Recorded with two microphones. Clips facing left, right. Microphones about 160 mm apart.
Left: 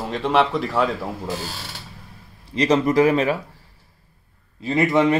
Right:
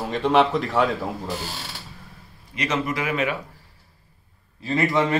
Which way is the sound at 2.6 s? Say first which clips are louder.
Left 9 dB; 35° left (ahead or behind).